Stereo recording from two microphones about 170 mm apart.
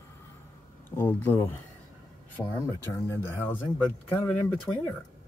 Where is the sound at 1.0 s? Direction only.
10° left (ahead or behind).